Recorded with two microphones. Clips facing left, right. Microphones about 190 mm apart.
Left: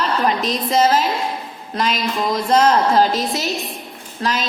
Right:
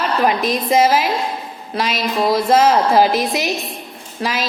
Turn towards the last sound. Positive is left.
turn(degrees=-5)  # may be behind; listen again after turning